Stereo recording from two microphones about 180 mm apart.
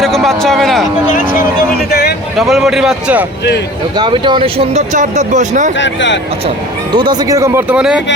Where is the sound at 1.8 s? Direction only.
60° left (ahead or behind).